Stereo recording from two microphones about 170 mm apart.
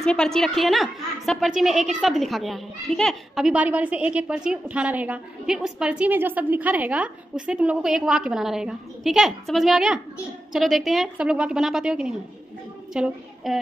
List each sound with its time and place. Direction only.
0.0 s a woman's voice: 5° left (ahead or behind)